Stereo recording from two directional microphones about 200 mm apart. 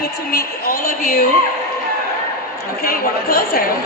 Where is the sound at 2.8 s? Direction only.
50° left (ahead or behind).